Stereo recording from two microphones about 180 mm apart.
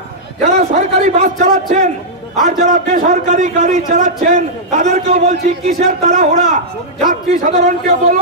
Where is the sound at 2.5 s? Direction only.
45° right (ahead or behind).